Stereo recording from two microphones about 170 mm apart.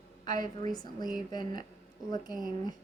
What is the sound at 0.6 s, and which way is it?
A woman's voice, 25° left (ahead or behind).